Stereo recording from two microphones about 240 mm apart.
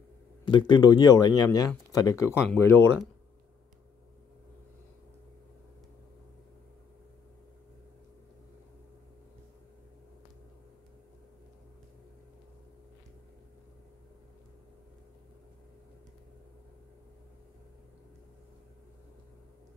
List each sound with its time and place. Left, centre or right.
0.5 s speech: centre